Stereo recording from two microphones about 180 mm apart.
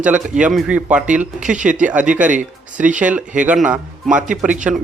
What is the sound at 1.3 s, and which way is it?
Speech, 45° right (ahead or behind).